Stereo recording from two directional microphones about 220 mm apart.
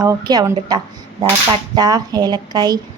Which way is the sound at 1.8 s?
15° right (ahead or behind).